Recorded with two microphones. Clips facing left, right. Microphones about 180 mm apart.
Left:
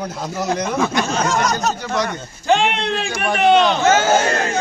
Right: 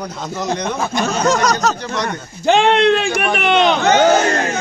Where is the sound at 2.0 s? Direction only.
70° right (ahead or behind).